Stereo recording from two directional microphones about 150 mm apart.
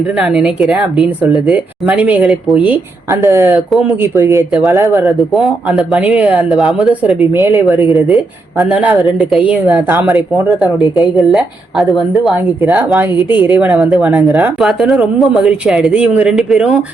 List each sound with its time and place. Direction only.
0.2 s speech: 5° right (ahead or behind)
3.7 s a woman's voice: centre (ahead or behind)
4.0 s speech: 15° right (ahead or behind)
7.4 s speech: 15° right (ahead or behind)
11.2 s a woman's voice: centre (ahead or behind)